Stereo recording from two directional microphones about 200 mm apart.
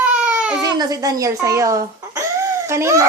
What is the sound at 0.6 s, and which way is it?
Speech, 20° right (ahead or behind).